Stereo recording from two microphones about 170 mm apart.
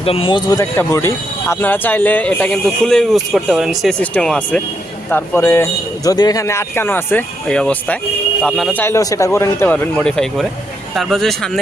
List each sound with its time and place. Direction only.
0.0 s speech: 35° left (ahead or behind); by 8.8 s 5° left (ahead or behind)
8.8 s speech: 20° left (ahead or behind); by 11.5 s centre (ahead or behind)